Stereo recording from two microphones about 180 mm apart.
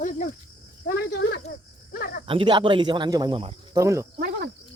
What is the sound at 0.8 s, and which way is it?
Speech, 65° left (ahead or behind).